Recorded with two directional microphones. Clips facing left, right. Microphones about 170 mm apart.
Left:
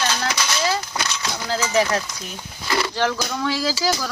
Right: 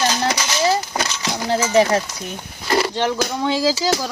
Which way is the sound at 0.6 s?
20° right (ahead or behind).